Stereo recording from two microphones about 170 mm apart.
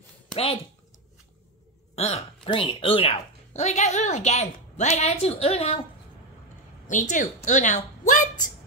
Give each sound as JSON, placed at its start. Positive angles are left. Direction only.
{"t": 0.3, "sound": "speech", "side_deg": 35}
{"t": 2.0, "sound": "speech", "side_deg": 40}
{"t": 6.9, "sound": "a woman's voice", "side_deg": 50}